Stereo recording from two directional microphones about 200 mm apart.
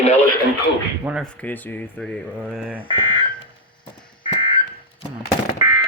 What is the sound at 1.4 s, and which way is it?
Speech, 10° left (ahead or behind).